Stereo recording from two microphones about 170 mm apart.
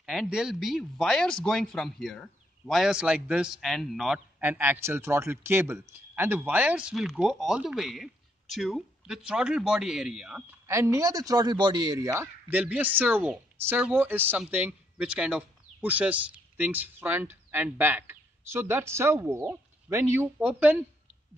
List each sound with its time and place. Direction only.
0.0 s speech: 5° right (ahead or behind)
10.7 s a man's voice: 15° right (ahead or behind)
12.1 s a woman's voice: 10° right (ahead or behind)